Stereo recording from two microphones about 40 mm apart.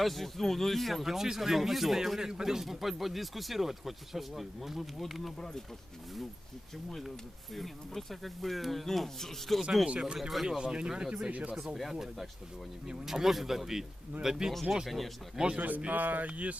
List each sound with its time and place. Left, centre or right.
0.0 s speech: centre
1.0 s speech: centre
7.5 s speech: centre
10.2 s speech: centre
10.6 s speech: right
11.3 s speech: right
11.8 s speech: centre
14.5 s speech: centre
15.4 s speech: right
15.9 s speech: right